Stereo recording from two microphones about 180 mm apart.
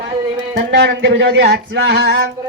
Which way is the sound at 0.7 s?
65° right (ahead or behind).